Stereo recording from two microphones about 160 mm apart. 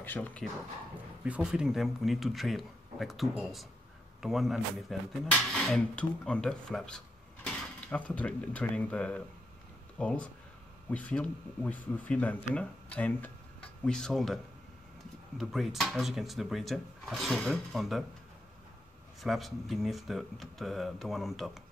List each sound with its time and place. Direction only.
0.0 s speech: 10° left (ahead or behind)
1.2 s speech: 5° right (ahead or behind)
19.2 s speech: centre (ahead or behind)